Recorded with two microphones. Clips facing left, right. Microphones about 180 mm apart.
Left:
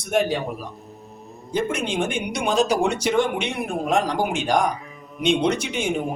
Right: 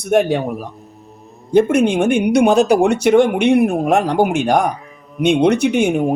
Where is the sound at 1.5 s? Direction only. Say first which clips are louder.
Right 12 dB; 60° right (ahead or behind).